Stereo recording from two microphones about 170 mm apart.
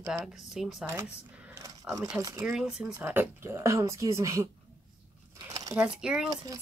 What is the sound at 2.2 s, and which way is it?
Speech, 20° right (ahead or behind).